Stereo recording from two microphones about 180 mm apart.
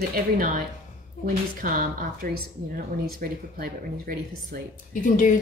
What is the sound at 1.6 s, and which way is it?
Speech, 50° right (ahead or behind).